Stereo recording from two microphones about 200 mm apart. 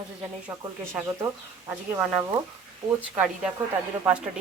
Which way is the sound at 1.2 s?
10° right (ahead or behind).